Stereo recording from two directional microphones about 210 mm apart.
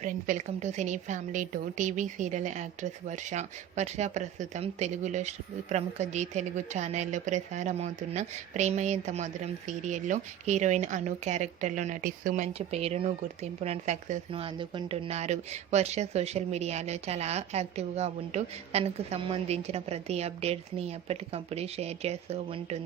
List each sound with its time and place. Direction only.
0.0 s a woman's voice: 35° right (ahead or behind)